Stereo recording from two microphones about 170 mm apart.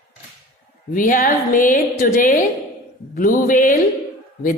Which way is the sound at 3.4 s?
50° left (ahead or behind).